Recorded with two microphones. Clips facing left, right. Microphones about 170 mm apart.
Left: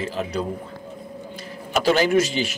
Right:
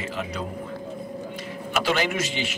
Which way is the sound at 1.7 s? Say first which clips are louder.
Left 7 dB; 40° left (ahead or behind).